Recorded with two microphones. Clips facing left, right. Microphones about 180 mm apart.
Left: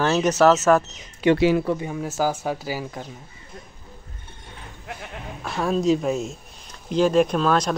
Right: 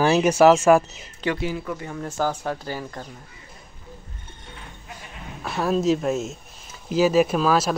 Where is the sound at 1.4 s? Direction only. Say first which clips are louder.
Left 9 dB; 90° left.